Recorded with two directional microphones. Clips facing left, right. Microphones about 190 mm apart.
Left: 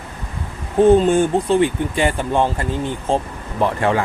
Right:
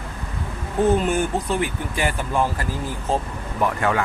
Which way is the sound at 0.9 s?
25° left (ahead or behind).